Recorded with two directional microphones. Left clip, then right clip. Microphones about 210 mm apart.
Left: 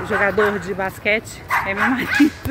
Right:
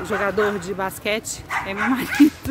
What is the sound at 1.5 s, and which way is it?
Dog, 25° left (ahead or behind).